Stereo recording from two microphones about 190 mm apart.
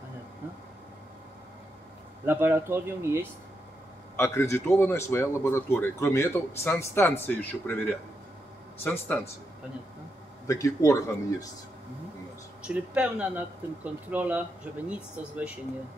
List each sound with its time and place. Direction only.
2.2 s speech: 10° right (ahead or behind)
4.2 s speech: 15° left (ahead or behind)
10.4 s speech: 15° left (ahead or behind)
12.6 s speech: 5° right (ahead or behind)